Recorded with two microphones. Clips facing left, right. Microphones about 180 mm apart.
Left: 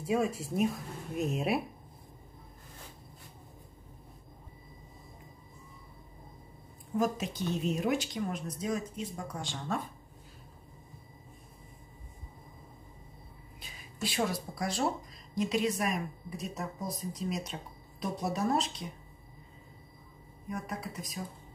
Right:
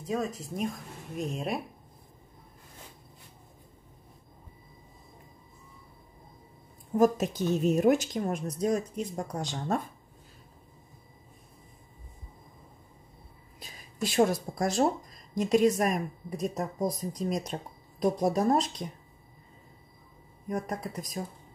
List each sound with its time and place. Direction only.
0.0 s speech: 10° left (ahead or behind)
7.0 s a woman's voice: 45° right (ahead or behind)
13.6 s a woman's voice: 45° right (ahead or behind)
20.4 s a woman's voice: 45° right (ahead or behind)